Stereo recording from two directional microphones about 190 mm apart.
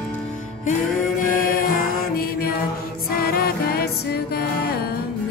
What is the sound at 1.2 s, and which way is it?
Mantra, 45° left (ahead or behind).